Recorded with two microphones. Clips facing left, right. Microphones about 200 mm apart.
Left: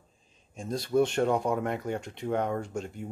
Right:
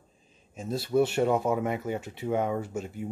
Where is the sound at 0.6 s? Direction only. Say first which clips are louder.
Right 1 dB; 5° right (ahead or behind).